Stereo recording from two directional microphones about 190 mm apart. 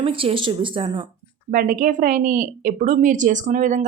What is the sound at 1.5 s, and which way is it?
A woman's voice, 45° right (ahead or behind).